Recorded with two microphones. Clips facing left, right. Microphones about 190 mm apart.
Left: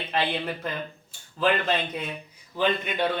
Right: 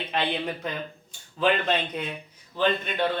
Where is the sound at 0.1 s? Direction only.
Centre (ahead or behind).